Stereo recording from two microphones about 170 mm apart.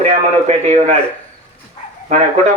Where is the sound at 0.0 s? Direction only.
40° right (ahead or behind).